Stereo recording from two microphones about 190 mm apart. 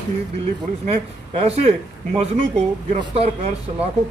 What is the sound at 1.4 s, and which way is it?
Speech, 30° right (ahead or behind).